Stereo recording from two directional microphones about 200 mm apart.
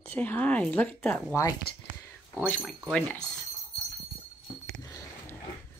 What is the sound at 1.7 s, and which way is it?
Speech, 55° left (ahead or behind).